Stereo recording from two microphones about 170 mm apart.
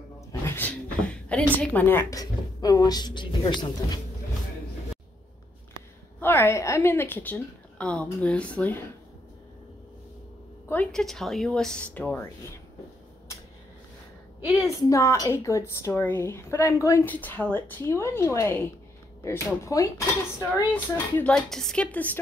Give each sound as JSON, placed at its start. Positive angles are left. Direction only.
{"t": 0.3, "sound": "a sound", "side_deg": 15}
{"t": 6.1, "sound": "a woman's voice", "side_deg": 10}
{"t": 10.7, "sound": "speech", "side_deg": 5}
{"t": 14.6, "sound": "a woman's voice", "side_deg": 20}